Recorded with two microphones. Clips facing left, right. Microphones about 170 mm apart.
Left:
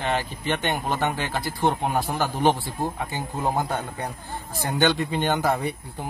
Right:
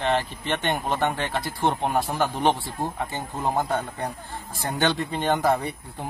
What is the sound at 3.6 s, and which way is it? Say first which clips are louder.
Speech: right 1 dB; 5° left (ahead or behind).